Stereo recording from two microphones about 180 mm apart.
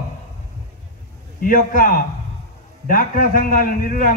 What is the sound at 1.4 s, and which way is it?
A man's voice, 45° left (ahead or behind).